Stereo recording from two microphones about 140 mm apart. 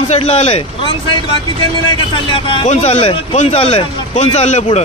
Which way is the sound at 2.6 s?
50° left (ahead or behind).